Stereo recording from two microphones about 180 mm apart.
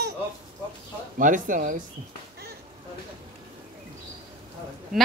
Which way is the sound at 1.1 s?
45° right (ahead or behind).